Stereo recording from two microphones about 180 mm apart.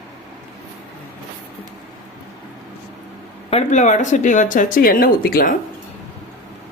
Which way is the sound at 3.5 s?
40° left (ahead or behind).